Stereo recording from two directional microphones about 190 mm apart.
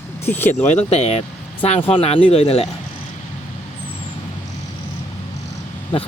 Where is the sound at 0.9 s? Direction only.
35° left (ahead or behind).